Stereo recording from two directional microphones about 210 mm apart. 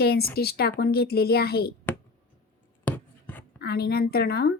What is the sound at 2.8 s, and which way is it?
Writing, 10° left (ahead or behind).